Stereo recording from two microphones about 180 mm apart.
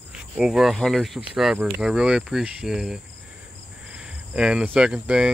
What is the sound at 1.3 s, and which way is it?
Cricket, 5° right (ahead or behind).